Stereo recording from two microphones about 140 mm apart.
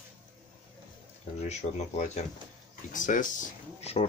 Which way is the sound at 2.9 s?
65° left (ahead or behind).